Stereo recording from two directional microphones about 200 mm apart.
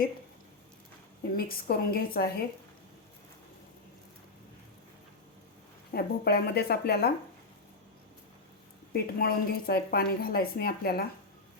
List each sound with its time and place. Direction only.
1.4 s a woman's voice: 45° left (ahead or behind)
5.9 s a woman's voice: 50° left (ahead or behind)
8.9 s a woman's voice: 50° left (ahead or behind)